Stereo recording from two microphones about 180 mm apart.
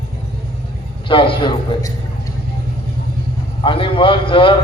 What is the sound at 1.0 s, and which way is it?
Speech, 30° left (ahead or behind).